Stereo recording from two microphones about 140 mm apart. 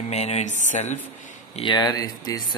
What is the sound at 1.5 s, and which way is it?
Speech, 35° left (ahead or behind).